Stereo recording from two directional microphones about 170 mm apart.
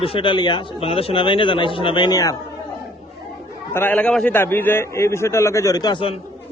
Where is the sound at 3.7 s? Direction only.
10° left (ahead or behind).